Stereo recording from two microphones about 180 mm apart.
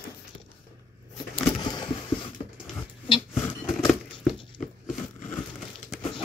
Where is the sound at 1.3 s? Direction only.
25° left (ahead or behind).